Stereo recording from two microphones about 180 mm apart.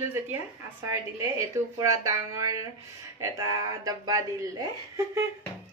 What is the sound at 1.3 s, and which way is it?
Speech, 15° right (ahead or behind).